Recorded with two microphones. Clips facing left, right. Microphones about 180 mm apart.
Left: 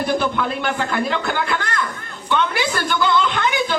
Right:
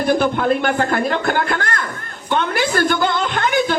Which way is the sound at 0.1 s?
50° right (ahead or behind).